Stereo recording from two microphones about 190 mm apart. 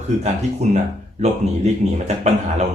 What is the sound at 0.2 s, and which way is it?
Speech, 35° right (ahead or behind).